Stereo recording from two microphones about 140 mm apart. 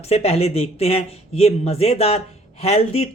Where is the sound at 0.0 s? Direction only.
45° left (ahead or behind).